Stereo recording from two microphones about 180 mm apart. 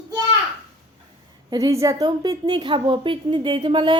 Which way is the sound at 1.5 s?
20° right (ahead or behind).